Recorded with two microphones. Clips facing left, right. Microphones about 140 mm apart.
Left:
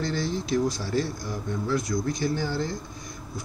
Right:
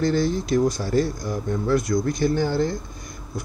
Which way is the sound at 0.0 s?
50° right (ahead or behind).